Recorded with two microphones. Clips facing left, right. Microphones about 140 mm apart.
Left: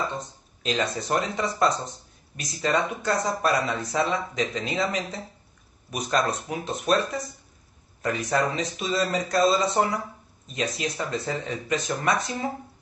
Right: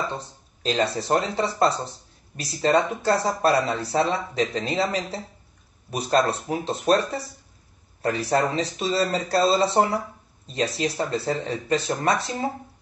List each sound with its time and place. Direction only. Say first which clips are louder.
0.1 s speech: right 1 dB; 30° right (ahead or behind)